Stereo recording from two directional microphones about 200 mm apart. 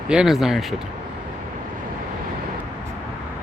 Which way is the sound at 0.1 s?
5° right (ahead or behind).